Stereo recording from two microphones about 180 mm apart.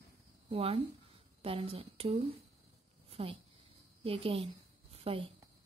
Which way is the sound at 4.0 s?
30° right (ahead or behind).